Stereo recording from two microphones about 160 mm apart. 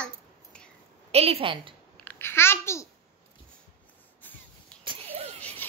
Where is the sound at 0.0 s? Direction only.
5° left (ahead or behind).